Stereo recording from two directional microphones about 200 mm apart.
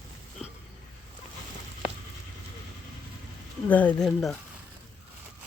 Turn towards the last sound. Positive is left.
turn(degrees=5)  # may be behind; listen again after turning